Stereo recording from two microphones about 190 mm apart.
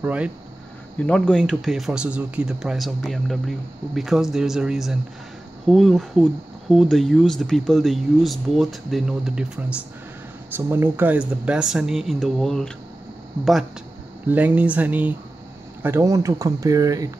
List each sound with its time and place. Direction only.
0.0 s speech: 5° right (ahead or behind)
0.9 s speech: 5° left (ahead or behind)
14.2 s speech: 10° right (ahead or behind)